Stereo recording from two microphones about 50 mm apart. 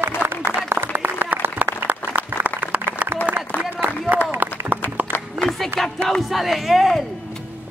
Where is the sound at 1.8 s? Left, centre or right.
Right.